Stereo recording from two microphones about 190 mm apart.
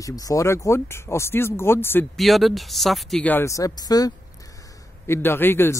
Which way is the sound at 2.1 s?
Centre (ahead or behind).